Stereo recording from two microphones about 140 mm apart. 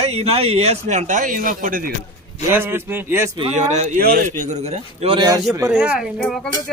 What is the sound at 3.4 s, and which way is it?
A man's voice, 55° right (ahead or behind).